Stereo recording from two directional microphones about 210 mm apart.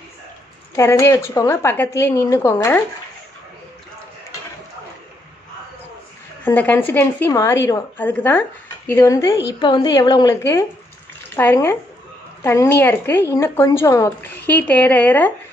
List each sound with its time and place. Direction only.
0.7 s a woman's voice: 15° left (ahead or behind)
6.4 s a woman's voice: 10° left (ahead or behind)